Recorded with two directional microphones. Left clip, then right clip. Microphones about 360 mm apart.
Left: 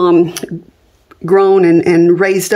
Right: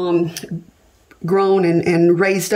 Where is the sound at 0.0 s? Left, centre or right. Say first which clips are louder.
Left 8 dB; centre.